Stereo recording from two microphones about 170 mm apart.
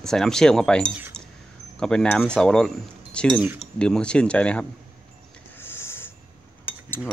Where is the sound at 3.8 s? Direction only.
5° left (ahead or behind).